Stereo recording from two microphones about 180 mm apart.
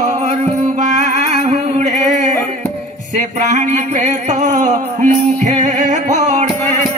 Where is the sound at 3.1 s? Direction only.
40° right (ahead or behind).